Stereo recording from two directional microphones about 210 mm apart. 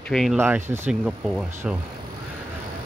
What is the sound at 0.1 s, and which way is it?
Speech, centre (ahead or behind).